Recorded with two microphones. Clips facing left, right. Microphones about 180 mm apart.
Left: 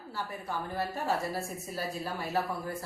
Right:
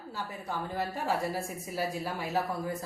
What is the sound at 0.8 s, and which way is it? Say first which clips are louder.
A woman's voice: even; 15° right (ahead or behind).